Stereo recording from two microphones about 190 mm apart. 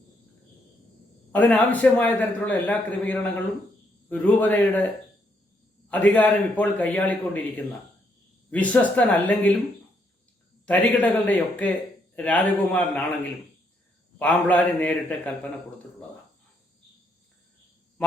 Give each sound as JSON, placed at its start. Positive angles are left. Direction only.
{"t": 1.3, "sound": "a man's voice", "side_deg": 10}
{"t": 5.9, "sound": "a man's voice", "side_deg": 10}
{"t": 10.7, "sound": "a man's voice", "side_deg": 10}
{"t": 14.2, "sound": "a man's voice", "side_deg": 10}